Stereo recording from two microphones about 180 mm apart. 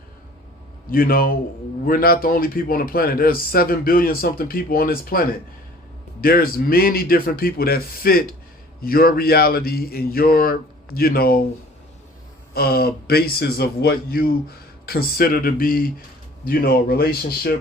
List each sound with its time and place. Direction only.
0.9 s speech: 55° left (ahead or behind)
12.5 s speech: 60° left (ahead or behind)